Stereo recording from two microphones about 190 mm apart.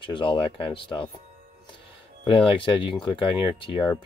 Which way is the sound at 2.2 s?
25° left (ahead or behind).